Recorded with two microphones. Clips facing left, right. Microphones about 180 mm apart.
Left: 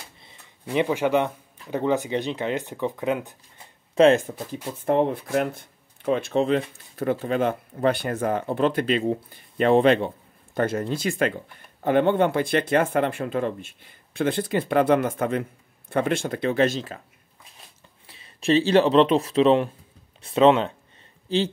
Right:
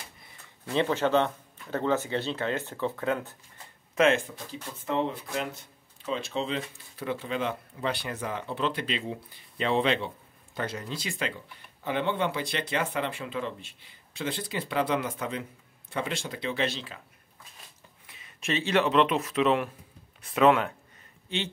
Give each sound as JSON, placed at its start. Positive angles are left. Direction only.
{"t": 0.7, "sound": "speech", "side_deg": 15}
{"t": 3.9, "sound": "speech", "side_deg": 35}
{"t": 4.7, "sound": "speech", "side_deg": 55}
{"t": 18.0, "sound": "speech", "side_deg": 30}